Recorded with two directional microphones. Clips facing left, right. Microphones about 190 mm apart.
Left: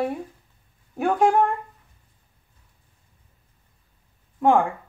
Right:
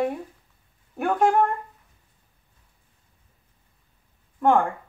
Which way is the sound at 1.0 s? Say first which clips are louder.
Left 1 dB; 10° left (ahead or behind).